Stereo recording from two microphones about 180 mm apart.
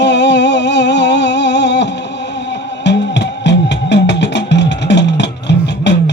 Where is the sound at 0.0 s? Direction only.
75° left (ahead or behind).